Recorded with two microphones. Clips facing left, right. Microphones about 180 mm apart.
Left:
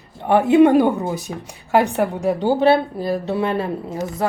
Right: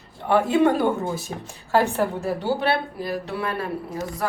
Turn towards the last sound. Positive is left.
turn(degrees=25)  # may be behind; listen again after turning